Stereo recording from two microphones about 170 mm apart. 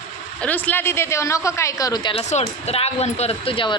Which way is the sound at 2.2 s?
40° left (ahead or behind).